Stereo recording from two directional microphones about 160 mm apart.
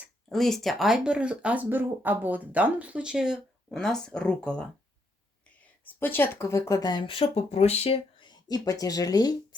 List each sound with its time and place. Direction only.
0.3 s speech: centre (ahead or behind)
5.8 s speech: 10° left (ahead or behind)